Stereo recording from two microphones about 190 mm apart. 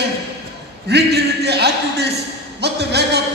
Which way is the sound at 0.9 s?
60° right (ahead or behind).